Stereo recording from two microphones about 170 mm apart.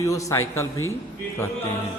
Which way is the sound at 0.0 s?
20° left (ahead or behind).